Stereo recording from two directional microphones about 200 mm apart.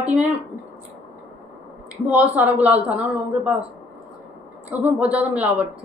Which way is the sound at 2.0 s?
10° right (ahead or behind).